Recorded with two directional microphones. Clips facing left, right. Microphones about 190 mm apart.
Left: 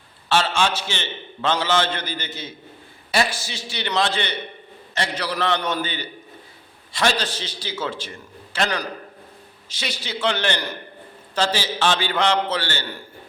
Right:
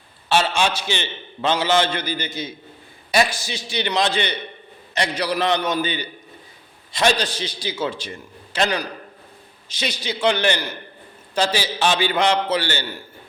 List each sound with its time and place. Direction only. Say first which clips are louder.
0.3 s a man's voice: right 1 dB; 15° right (ahead or behind)